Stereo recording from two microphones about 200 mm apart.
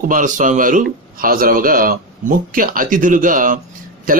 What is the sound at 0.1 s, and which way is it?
A man's voice, 40° right (ahead or behind).